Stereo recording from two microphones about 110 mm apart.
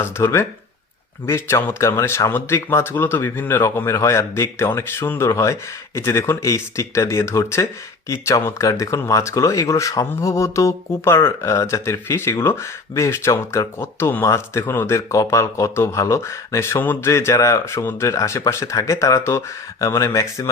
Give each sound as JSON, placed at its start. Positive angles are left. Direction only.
{"t": 0.0, "sound": "speech", "side_deg": 25}